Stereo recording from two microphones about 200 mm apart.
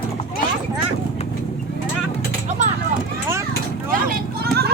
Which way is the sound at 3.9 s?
45° right (ahead or behind).